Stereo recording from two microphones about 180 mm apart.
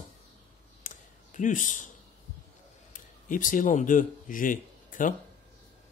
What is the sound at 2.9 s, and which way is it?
Speech, 50° left (ahead or behind).